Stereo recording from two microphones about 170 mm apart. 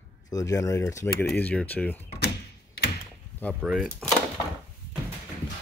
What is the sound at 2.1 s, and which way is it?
Door, 75° left (ahead or behind).